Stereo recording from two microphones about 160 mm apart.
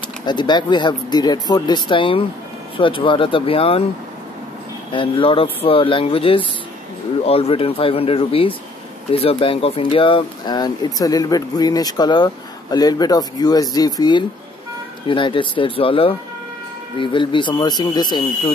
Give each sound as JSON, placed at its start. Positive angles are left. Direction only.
{"t": 0.2, "sound": "speech", "side_deg": 30}
{"t": 4.9, "sound": "speech", "side_deg": 35}